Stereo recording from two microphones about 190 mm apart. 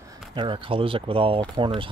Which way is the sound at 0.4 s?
25° right (ahead or behind).